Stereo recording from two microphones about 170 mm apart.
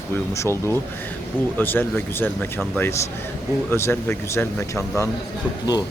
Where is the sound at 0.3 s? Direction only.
15° left (ahead or behind).